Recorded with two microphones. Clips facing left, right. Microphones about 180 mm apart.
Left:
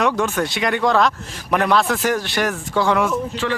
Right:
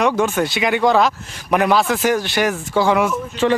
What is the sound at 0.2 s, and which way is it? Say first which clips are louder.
Speech: right 3 dB; centre (ahead or behind).